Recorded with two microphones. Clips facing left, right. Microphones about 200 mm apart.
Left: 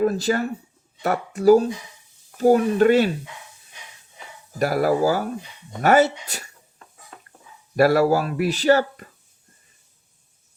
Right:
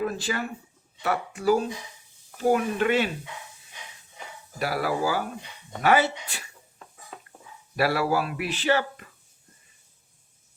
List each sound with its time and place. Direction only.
0.0 s speech: 40° left (ahead or behind)
4.6 s speech: 45° left (ahead or behind)
7.8 s speech: 45° left (ahead or behind)